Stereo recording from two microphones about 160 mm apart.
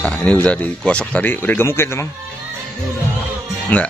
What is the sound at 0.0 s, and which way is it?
Speech, 5° left (ahead or behind).